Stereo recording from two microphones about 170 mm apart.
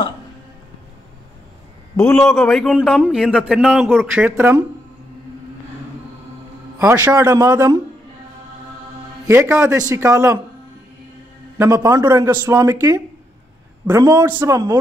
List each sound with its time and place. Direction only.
2.0 s a man's voice: 15° left (ahead or behind)
2.2 s speech: centre (ahead or behind)
4.2 s speech: 10° right (ahead or behind)
6.8 s a man's voice: 15° right (ahead or behind)
9.2 s a man's voice: 15° right (ahead or behind)
11.5 s a man's voice: 15° right (ahead or behind)